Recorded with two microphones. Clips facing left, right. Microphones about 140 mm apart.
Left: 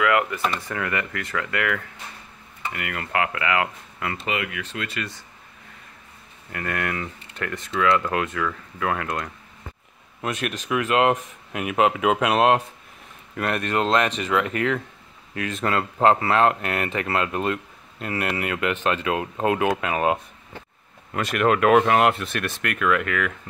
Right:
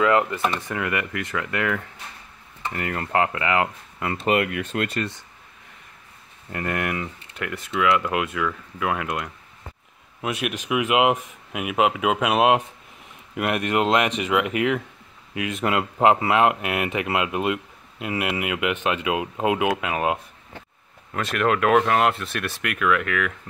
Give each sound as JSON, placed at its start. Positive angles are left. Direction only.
{"t": 0.0, "sound": "speech", "side_deg": -25}
{"t": 4.2, "sound": "speech", "side_deg": -50}
{"t": 6.5, "sound": "speech", "side_deg": -20}